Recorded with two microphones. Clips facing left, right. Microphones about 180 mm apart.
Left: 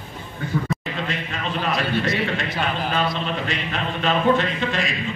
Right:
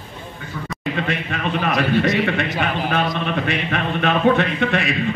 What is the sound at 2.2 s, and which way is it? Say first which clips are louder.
A man's voice: right 3 dB; 65° right (ahead or behind).